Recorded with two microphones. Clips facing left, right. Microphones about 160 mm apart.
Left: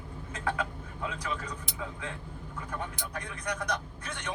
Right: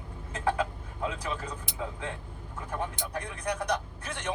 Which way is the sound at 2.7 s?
30° right (ahead or behind).